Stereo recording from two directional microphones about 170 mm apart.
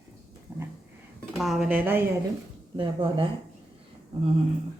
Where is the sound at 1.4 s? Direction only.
Centre (ahead or behind).